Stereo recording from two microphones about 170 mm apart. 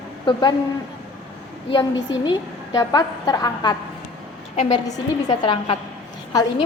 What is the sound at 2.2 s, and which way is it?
A woman's voice, 25° left (ahead or behind).